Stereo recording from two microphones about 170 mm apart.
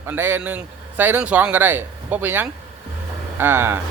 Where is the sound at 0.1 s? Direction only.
10° right (ahead or behind).